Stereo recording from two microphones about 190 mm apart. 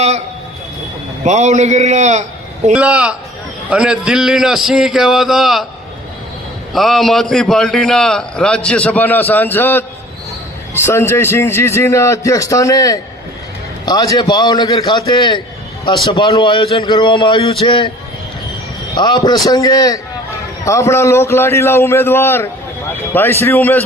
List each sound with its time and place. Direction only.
1.2 s a man's voice: 35° right (ahead or behind)
2.7 s a man's voice: 5° right (ahead or behind)
6.7 s a man's voice: centre (ahead or behind)
10.8 s a man's voice: 15° left (ahead or behind)
18.9 s a man's voice: 20° left (ahead or behind)